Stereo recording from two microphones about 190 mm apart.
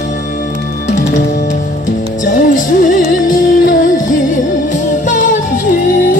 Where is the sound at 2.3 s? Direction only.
45° left (ahead or behind).